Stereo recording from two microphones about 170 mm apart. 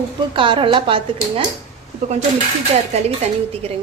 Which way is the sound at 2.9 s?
35° right (ahead or behind).